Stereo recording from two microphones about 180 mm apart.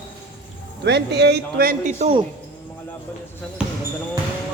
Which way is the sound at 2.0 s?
30° right (ahead or behind).